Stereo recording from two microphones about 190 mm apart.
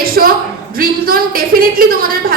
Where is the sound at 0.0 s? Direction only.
50° right (ahead or behind).